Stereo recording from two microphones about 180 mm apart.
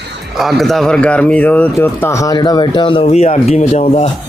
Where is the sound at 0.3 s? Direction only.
Centre (ahead or behind); by 4.1 s 40° left (ahead or behind).